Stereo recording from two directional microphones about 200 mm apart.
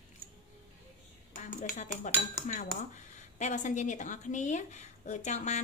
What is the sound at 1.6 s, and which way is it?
Speech, 40° left (ahead or behind).